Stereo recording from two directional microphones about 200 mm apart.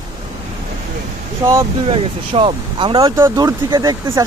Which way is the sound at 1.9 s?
25° right (ahead or behind).